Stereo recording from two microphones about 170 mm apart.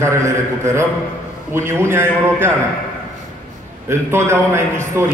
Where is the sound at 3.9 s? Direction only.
15° right (ahead or behind).